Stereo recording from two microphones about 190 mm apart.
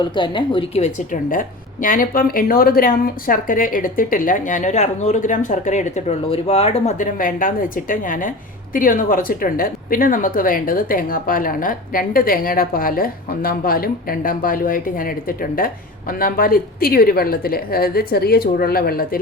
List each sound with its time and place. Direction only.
0.0 s speech: 25° left (ahead or behind); by 19.2 s 50° left (ahead or behind)